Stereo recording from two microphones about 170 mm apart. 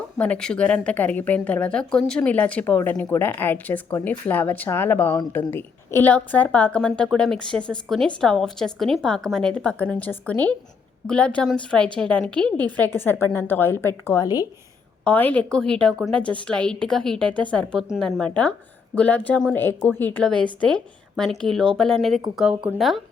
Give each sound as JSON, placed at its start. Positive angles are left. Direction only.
{"t": 0.2, "sound": "a woman's voice", "side_deg": 5}
{"t": 15.0, "sound": "a woman's voice", "side_deg": 10}